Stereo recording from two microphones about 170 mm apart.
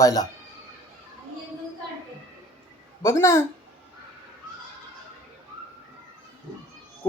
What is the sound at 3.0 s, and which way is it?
Speech, 15° left (ahead or behind).